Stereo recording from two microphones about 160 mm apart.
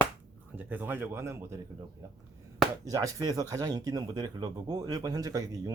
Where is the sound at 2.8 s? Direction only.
20° right (ahead or behind).